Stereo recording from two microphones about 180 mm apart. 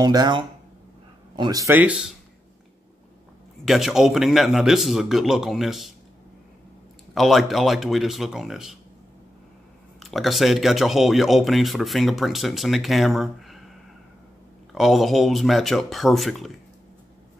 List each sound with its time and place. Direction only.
0.0 s speech: 20° right (ahead or behind); by 2.1 s 5° right (ahead or behind)
3.6 s speech: centre (ahead or behind)
7.2 s speech: centre (ahead or behind)
9.9 s speech: centre (ahead or behind)
14.7 s speech: centre (ahead or behind)